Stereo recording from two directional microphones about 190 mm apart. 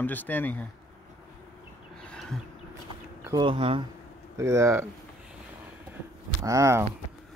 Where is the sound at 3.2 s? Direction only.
25° right (ahead or behind).